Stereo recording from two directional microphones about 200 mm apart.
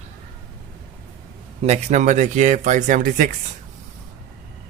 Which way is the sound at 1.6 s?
35° right (ahead or behind).